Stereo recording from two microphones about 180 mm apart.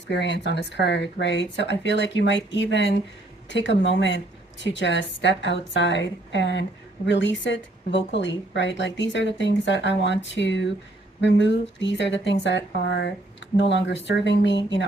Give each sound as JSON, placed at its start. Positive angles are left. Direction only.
{"t": 0.1, "sound": "a woman's voice", "side_deg": 80}